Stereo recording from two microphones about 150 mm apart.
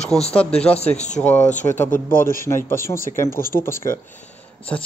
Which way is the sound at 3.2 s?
75° left (ahead or behind).